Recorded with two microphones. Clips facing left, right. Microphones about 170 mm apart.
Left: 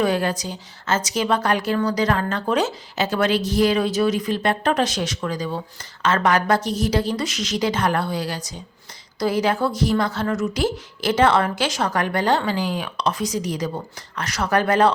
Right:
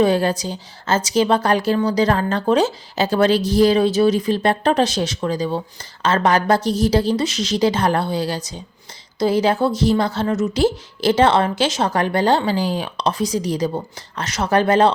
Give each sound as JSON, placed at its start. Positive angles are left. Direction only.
{"t": 0.0, "sound": "a woman's voice", "side_deg": -30}